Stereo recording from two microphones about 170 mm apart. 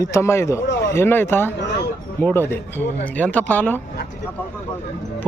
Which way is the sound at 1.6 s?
90° left.